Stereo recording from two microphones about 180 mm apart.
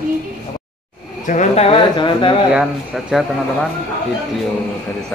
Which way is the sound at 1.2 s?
40° left (ahead or behind).